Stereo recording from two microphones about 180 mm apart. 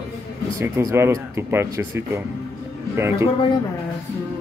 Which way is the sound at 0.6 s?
15° right (ahead or behind).